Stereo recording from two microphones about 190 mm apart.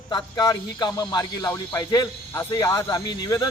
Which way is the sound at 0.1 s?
20° left (ahead or behind).